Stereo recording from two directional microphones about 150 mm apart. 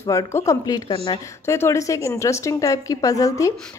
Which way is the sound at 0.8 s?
35° left (ahead or behind).